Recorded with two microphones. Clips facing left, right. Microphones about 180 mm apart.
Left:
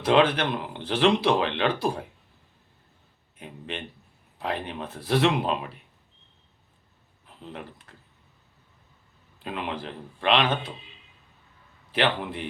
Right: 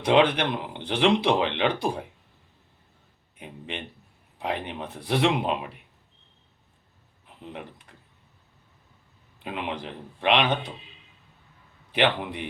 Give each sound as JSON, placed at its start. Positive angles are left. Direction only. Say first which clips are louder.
{"t": 0.0, "sound": "speech", "louder": "even", "side_deg": -20}
{"t": 3.3, "sound": "speech", "louder": "even", "side_deg": -20}
{"t": 7.3, "sound": "speech", "louder": "even", "side_deg": -15}
{"t": 9.4, "sound": "speech", "louder": "even", "side_deg": -15}
{"t": 11.9, "sound": "speech", "louder": "right 1 dB", "side_deg": -15}